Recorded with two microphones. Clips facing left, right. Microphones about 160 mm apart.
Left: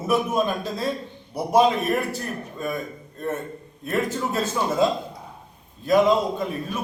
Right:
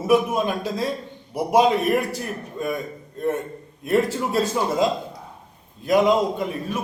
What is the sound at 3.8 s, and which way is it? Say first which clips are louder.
A man's voice: right 4 dB; 10° right (ahead or behind).